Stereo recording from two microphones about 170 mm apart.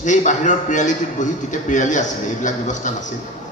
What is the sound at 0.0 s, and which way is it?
A man's voice, 45° left (ahead or behind).